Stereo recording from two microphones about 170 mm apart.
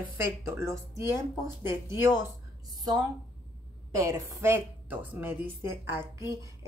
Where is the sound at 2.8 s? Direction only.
20° right (ahead or behind).